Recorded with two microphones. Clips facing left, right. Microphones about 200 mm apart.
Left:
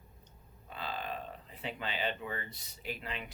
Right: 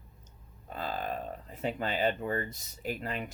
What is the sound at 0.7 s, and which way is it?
Speech, 45° right (ahead or behind).